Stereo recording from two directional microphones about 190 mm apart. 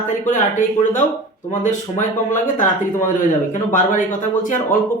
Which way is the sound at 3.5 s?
40° left (ahead or behind).